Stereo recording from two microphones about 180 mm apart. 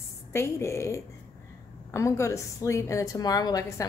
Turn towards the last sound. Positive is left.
turn(degrees=20)  # may be behind; listen again after turning